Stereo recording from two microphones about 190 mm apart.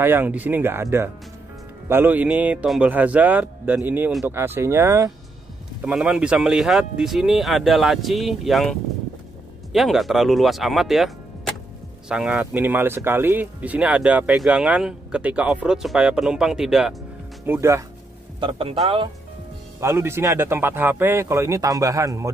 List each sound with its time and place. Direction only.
0.0 s a man's voice: 10° right (ahead or behind)
17.5 s a man's voice: 15° right (ahead or behind)
18.4 s speech: 30° right (ahead or behind)
19.8 s a man's voice: 15° right (ahead or behind)